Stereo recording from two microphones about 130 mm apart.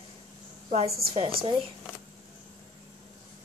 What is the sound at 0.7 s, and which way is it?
Speech, 55° right (ahead or behind).